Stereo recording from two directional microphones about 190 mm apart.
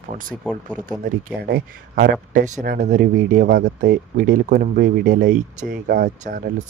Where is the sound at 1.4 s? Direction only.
55° right (ahead or behind).